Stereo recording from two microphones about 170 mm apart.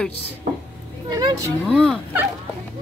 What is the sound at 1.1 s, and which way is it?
Speech, 20° right (ahead or behind).